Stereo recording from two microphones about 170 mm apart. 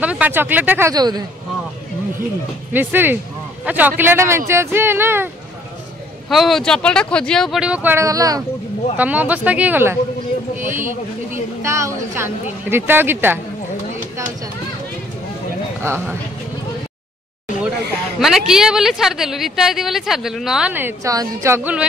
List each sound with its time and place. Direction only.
0.0 s speech: 10° right (ahead or behind)
0.9 s speech: 25° right (ahead or behind)
2.7 s speech: 10° right (ahead or behind)
6.2 s a woman's voice: centre (ahead or behind); by 8.5 s 20° right (ahead or behind)
8.9 s speech: 10° right (ahead or behind)
11.6 s speech: 15° right (ahead or behind)
15.8 s speech: 15° right (ahead or behind)
18.2 s a woman's voice: centre (ahead or behind)